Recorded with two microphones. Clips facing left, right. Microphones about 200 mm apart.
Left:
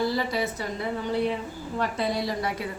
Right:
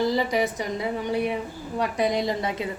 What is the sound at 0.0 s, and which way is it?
A woman's voice, 15° right (ahead or behind).